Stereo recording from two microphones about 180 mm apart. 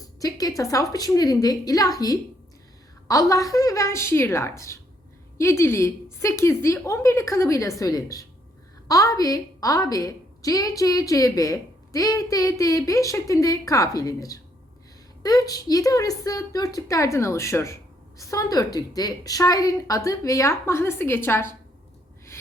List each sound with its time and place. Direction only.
0.2 s a woman's voice: 20° left (ahead or behind)